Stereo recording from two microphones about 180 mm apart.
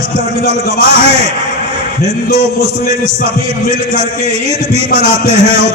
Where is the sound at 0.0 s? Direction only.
35° right (ahead or behind).